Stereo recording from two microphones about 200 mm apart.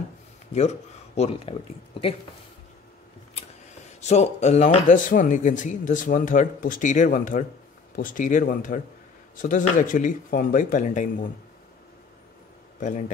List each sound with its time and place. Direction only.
0.6 s speech: 35° left (ahead or behind)
4.0 s speech: 35° left (ahead or behind)